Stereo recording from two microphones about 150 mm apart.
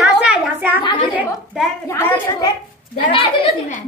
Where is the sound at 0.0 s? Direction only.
5° right (ahead or behind).